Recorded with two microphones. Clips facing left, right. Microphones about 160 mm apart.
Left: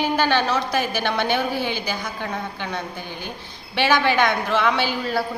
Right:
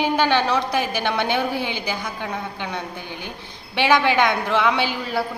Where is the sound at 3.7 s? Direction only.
20° right (ahead or behind).